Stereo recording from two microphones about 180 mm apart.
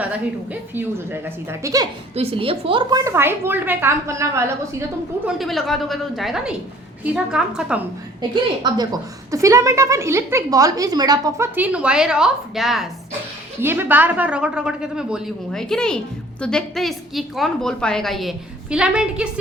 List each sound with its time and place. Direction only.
0.7 s a woman's voice: 10° right (ahead or behind)
2.1 s a woman's voice: 30° right (ahead or behind)
3.0 s a woman's voice: 15° right (ahead or behind)
5.2 s a woman's voice: centre (ahead or behind)
8.6 s a woman's voice: 20° right (ahead or behind); by 12.9 s centre (ahead or behind)
13.6 s a woman's voice: 10° right (ahead or behind)